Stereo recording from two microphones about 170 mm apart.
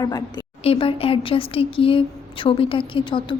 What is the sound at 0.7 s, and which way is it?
A woman's voice, 35° left (ahead or behind).